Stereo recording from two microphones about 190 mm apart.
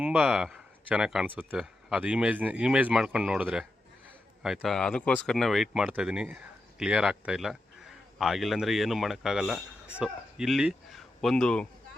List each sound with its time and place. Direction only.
0.0 s speech: 5° right (ahead or behind)